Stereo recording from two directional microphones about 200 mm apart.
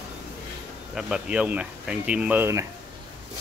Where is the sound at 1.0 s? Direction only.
5° right (ahead or behind).